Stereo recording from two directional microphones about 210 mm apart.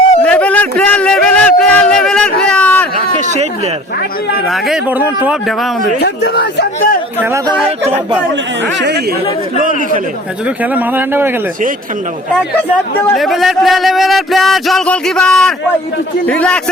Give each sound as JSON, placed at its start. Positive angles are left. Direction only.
{"t": 0.2, "sound": "a sound", "side_deg": 5}
{"t": 3.2, "sound": "a sound", "side_deg": -35}
{"t": 4.4, "sound": "speech", "side_deg": 0}
{"t": 6.0, "sound": "speech", "side_deg": 50}
{"t": 7.2, "sound": "speech", "side_deg": -15}
{"t": 8.8, "sound": "speech", "side_deg": -50}
{"t": 9.6, "sound": "a man's voice", "side_deg": -40}
{"t": 10.6, "sound": "speech", "side_deg": -10}
{"t": 13.0, "sound": "speech", "side_deg": 5}